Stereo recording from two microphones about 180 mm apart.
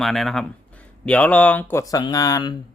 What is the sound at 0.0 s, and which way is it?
Speech, centre (ahead or behind).